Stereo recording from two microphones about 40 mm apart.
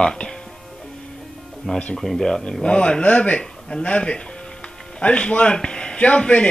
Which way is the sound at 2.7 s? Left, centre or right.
Left.